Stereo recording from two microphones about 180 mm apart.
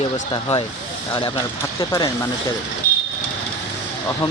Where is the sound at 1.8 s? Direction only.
20° left (ahead or behind).